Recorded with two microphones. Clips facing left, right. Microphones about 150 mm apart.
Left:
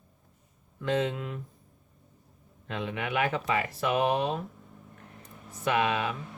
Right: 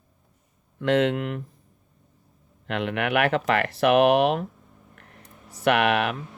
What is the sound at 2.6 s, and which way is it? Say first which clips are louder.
Speech: right 7 dB; 75° right (ahead or behind).